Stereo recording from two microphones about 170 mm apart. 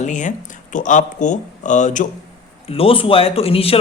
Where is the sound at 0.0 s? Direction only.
45° left (ahead or behind).